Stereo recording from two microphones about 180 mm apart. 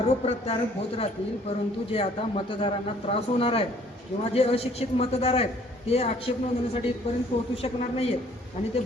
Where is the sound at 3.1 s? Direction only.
30° left (ahead or behind).